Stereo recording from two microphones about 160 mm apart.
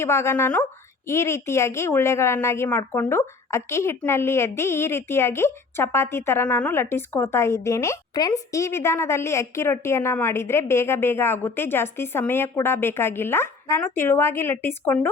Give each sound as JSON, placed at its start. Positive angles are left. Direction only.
{"t": 0.0, "sound": "a woman's voice", "side_deg": 15}